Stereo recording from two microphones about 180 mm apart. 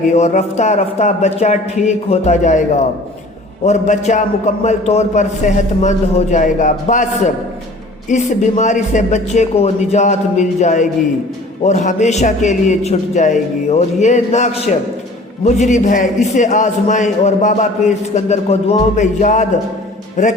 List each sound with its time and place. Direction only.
0.1 s a man's voice: 40° left (ahead or behind)
8.1 s a man's voice: 40° left (ahead or behind)